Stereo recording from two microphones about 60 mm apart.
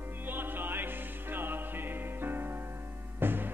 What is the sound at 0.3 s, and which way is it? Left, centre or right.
Music, right.